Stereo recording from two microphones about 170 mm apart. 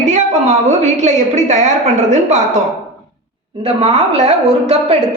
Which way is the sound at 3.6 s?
40° right (ahead or behind).